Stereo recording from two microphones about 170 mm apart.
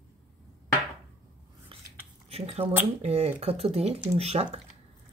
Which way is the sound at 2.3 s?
35° right (ahead or behind).